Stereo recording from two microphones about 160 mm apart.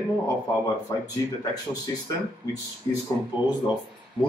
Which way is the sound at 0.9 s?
20° left (ahead or behind).